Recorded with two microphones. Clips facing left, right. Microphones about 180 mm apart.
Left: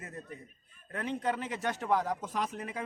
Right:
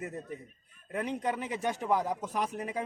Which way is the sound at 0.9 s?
15° right (ahead or behind).